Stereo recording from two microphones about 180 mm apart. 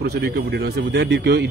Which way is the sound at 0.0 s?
65° right (ahead or behind).